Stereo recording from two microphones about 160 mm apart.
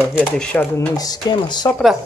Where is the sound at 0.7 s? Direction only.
25° left (ahead or behind).